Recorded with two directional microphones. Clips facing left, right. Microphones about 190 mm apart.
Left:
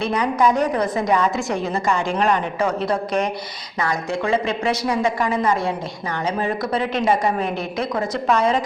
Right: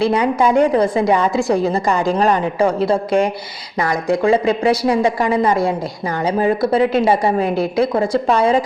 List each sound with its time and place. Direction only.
0.0 s a woman's voice: 30° right (ahead or behind)